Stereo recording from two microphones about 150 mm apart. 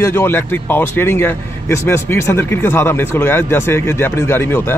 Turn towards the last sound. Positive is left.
turn(degrees=15)  # may be behind; listen again after turning